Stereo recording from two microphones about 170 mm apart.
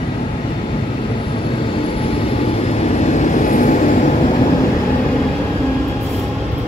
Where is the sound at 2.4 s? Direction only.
35° left (ahead or behind).